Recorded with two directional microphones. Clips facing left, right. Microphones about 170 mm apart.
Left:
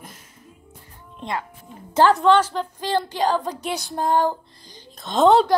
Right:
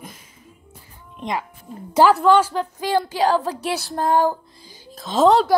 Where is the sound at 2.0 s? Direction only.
5° right (ahead or behind).